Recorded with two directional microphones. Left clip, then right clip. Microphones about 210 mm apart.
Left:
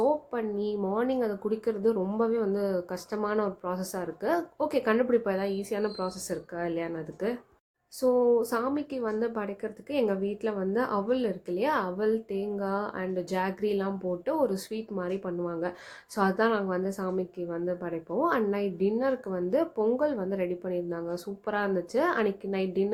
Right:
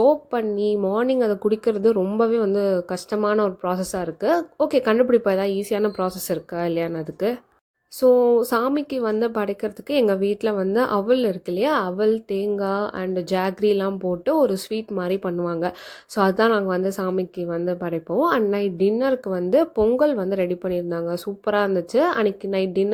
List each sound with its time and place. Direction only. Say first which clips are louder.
0.0 s a woman's voice: right 9 dB; 35° right (ahead or behind)